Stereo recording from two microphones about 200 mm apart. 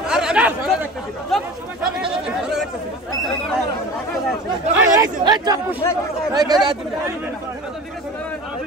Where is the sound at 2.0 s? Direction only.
5° right (ahead or behind).